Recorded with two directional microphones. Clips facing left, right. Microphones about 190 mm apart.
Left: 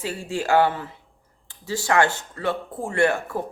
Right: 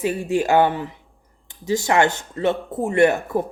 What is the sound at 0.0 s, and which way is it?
Speech, 20° right (ahead or behind).